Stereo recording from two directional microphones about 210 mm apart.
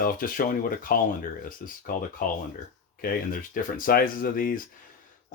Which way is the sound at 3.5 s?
45° left (ahead or behind).